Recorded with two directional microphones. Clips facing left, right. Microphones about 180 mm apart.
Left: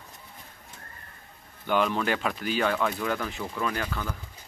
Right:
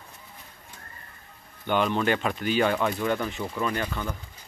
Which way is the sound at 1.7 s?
Centre (ahead or behind).